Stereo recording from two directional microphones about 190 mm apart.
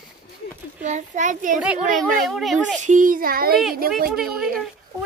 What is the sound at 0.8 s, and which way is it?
Speech, 40° right (ahead or behind).